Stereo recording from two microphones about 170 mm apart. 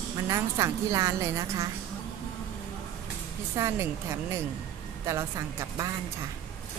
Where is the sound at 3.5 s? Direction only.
15° right (ahead or behind).